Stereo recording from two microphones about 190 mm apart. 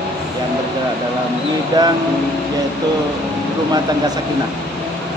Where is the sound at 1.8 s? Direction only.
20° right (ahead or behind).